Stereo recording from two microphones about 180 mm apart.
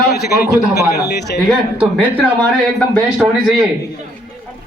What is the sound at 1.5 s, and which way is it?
Speech, 10° right (ahead or behind).